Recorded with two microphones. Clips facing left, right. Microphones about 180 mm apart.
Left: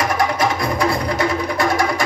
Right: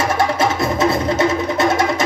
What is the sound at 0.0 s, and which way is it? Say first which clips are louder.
Music: right 1 dB; 25° right (ahead or behind).